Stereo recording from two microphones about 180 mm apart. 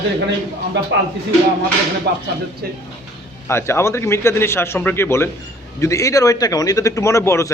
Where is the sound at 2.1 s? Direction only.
65° right (ahead or behind).